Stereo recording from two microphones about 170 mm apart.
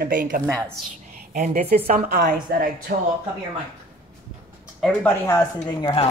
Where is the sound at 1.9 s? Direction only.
55° right (ahead or behind).